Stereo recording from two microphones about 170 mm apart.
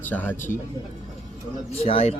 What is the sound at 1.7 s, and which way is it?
Speech, 35° left (ahead or behind).